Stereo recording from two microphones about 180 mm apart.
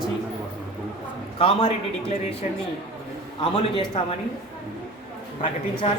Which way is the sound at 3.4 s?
30° left (ahead or behind).